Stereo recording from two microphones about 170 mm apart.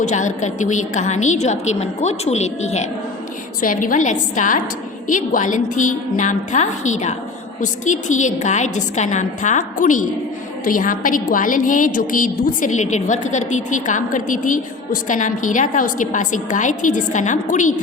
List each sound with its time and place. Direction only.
0.0 s a woman's voice: 45° left (ahead or behind)
3.6 s a woman's voice: 55° left (ahead or behind)